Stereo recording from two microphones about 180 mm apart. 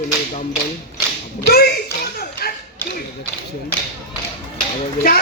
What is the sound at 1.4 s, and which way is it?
Tap, 60° left (ahead or behind).